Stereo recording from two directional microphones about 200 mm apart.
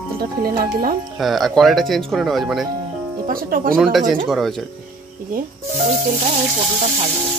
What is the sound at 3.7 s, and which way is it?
Speech, centre (ahead or behind).